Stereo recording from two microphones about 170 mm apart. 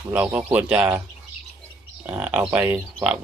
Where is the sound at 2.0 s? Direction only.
5° right (ahead or behind).